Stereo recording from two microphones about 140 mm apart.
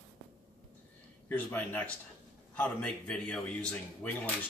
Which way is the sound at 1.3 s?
15° left (ahead or behind).